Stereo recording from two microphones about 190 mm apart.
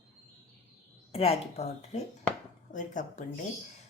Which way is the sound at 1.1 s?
30° left (ahead or behind).